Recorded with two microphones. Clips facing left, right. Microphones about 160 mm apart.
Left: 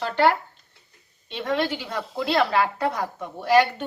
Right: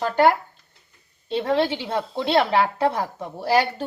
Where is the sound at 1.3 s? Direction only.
35° right (ahead or behind).